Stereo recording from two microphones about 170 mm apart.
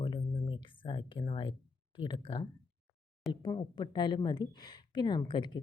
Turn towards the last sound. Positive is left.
turn(degrees=25)  # may be behind; listen again after turning